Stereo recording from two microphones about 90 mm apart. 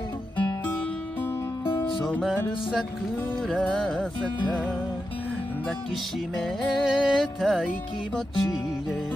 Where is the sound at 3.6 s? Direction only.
10° left (ahead or behind).